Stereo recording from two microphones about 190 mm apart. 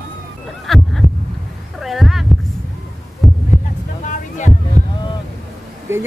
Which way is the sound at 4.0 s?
40° left (ahead or behind).